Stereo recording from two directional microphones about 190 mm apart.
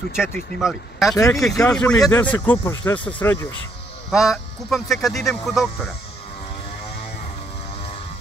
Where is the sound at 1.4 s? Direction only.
15° left (ahead or behind).